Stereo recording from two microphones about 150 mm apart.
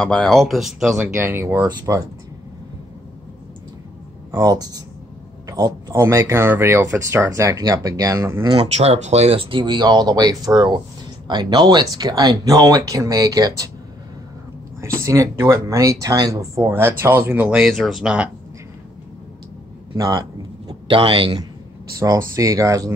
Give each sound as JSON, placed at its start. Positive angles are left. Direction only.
{"t": 0.0, "sound": "speech", "side_deg": 5}
{"t": 1.1, "sound": "speech", "side_deg": -15}
{"t": 4.3, "sound": "speech", "side_deg": -25}
{"t": 8.7, "sound": "speech", "side_deg": -45}
{"t": 15.0, "sound": "speech", "side_deg": -20}
{"t": 20.0, "sound": "a sound", "side_deg": -25}
{"t": 20.9, "sound": "speech", "side_deg": -35}